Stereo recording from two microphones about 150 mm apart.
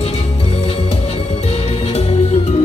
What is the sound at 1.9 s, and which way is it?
Music, 45° left (ahead or behind).